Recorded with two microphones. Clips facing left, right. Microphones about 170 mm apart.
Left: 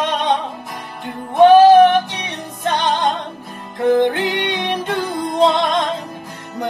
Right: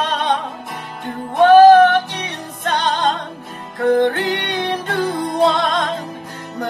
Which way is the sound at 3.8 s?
20° left (ahead or behind).